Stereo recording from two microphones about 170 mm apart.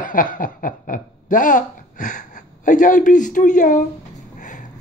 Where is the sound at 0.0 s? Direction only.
50° left (ahead or behind).